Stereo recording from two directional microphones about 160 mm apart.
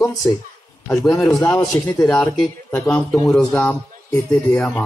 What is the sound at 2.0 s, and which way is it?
A child's voice, 5° left (ahead or behind).